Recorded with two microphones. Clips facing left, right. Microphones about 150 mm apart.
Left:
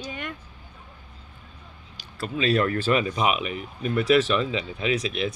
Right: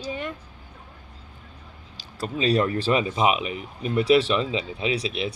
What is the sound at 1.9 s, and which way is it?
Speech, 35° right (ahead or behind).